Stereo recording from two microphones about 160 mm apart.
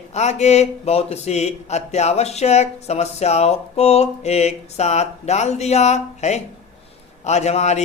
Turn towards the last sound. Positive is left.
turn(degrees=45)  # may be behind; listen again after turning